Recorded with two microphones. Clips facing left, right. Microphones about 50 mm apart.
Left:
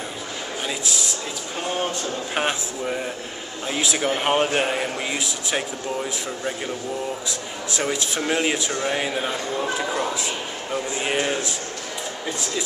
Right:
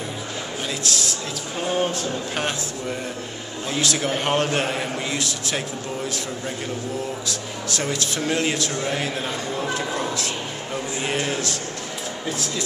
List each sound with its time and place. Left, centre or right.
0.7 s a man's voice: centre
1.7 s a sound: centre
2.3 s speech: centre
7.2 s speech: centre